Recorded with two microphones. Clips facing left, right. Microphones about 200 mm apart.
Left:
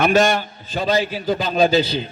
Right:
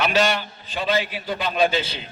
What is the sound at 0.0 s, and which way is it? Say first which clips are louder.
A man's voice: left 5 dB; 50° left (ahead or behind).